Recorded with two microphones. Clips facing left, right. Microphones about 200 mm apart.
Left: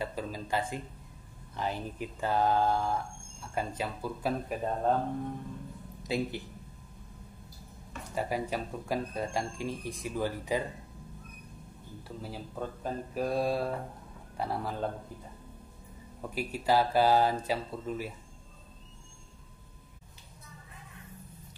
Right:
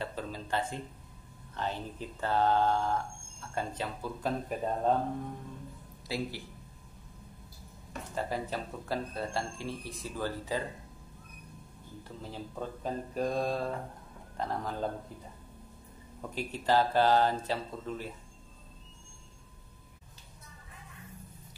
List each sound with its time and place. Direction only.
0.0 s speech: 10° left (ahead or behind)
6.0 s speech: 20° left (ahead or behind)
8.1 s speech: 10° left (ahead or behind)
12.2 s speech: 5° left (ahead or behind)
16.2 s speech: 10° left (ahead or behind)